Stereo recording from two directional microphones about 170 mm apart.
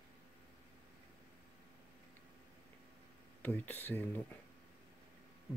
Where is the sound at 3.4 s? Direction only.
10° left (ahead or behind).